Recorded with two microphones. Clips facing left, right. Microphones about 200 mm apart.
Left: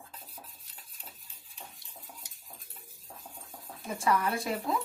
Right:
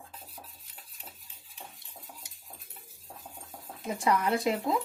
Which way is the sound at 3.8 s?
20° right (ahead or behind).